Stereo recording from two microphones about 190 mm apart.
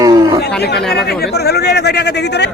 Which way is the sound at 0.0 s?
20° right (ahead or behind).